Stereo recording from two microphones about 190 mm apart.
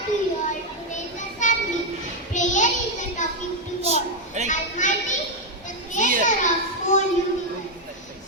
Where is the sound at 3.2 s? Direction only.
40° left (ahead or behind).